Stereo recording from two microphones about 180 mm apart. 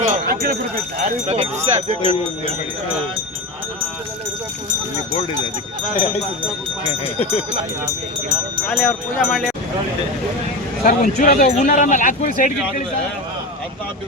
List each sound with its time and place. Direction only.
0.0 s speech: 50° right (ahead or behind)
0.9 s speech: 35° right (ahead or behind)
6.8 s speech: 30° left (ahead or behind)
8.7 s speech: 5° left (ahead or behind)
10.8 s speech: 50° left (ahead or behind)